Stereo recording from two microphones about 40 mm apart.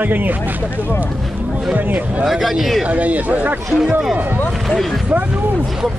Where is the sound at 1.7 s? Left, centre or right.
Right.